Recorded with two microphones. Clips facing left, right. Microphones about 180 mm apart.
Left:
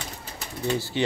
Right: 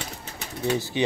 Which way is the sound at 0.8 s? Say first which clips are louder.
Right 1 dB; 20° right (ahead or behind).